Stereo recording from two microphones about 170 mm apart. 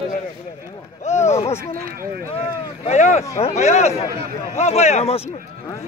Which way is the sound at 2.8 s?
40° left (ahead or behind).